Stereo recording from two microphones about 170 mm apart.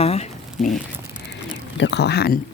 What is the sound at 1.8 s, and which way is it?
Speech, 85° left.